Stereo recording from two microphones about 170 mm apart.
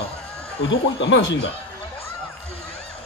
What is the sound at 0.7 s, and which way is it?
Speech, 90° left.